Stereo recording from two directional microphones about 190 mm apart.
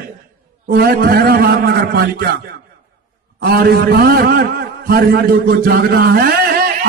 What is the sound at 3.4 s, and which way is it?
A man's voice, 55° right (ahead or behind).